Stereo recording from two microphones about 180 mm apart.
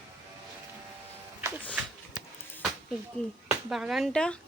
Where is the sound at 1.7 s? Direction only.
5° right (ahead or behind).